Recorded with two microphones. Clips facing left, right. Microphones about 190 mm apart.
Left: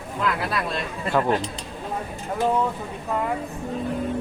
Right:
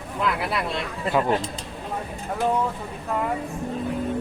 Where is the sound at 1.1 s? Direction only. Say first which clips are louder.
Even; 10° right (ahead or behind).